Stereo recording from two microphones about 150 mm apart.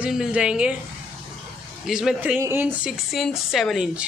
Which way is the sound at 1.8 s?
Centre (ahead or behind).